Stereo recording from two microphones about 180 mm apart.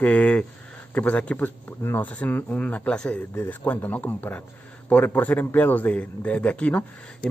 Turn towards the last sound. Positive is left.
turn(degrees=5)  # may be behind; listen again after turning